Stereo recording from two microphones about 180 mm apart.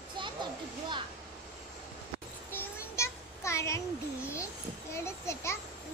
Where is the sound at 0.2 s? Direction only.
25° right (ahead or behind).